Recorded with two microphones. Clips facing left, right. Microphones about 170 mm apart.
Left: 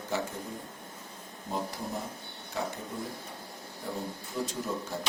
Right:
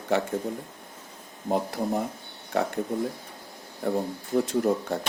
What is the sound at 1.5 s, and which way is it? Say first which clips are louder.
Speech: right 9 dB; 60° right (ahead or behind).